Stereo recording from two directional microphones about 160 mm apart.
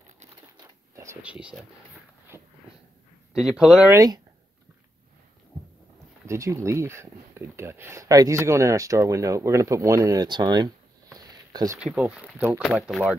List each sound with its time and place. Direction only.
1.2 s speech: 10° right (ahead or behind)
3.3 s speech: 5° right (ahead or behind)
3.9 s speech: 20° right (ahead or behind)
6.2 s speech: 20° right (ahead or behind)
11.8 s speech: 5° right (ahead or behind)
12.4 s speech: 15° right (ahead or behind)
12.6 s speech: centre (ahead or behind)